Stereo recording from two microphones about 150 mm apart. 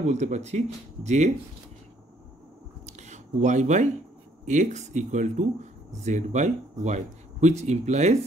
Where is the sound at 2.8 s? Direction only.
55° right (ahead or behind).